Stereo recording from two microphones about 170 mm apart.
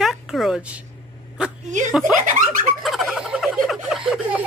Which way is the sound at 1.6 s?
45° right (ahead or behind).